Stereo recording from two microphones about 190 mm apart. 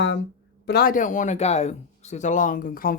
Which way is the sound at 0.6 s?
55° left (ahead or behind).